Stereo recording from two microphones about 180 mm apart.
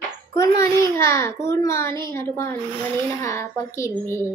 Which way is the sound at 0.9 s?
15° left (ahead or behind).